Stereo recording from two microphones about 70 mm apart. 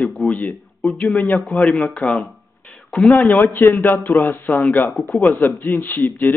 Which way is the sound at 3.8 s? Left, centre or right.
Left.